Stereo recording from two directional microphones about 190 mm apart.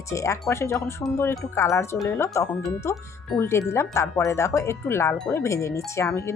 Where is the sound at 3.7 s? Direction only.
15° left (ahead or behind).